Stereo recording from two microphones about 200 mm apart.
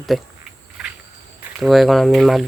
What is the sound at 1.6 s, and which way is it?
Speech, centre (ahead or behind).